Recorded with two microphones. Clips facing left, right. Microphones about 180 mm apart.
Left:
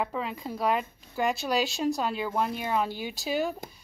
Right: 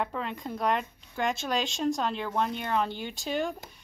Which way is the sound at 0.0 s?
5° left (ahead or behind).